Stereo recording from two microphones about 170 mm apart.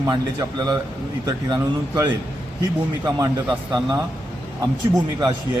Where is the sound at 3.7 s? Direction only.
25° right (ahead or behind).